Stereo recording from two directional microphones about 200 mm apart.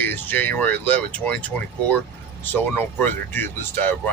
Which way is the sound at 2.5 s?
10° left (ahead or behind).